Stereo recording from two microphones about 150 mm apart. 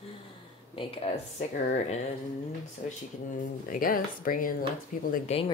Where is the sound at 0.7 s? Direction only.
35° left (ahead or behind).